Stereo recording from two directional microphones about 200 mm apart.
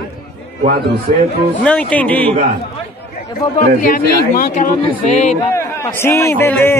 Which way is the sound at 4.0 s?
45° left (ahead or behind).